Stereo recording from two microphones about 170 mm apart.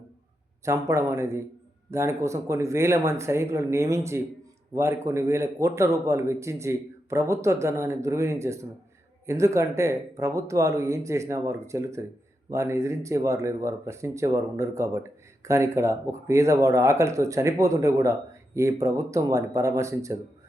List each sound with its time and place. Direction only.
0.6 s speech: 15° right (ahead or behind)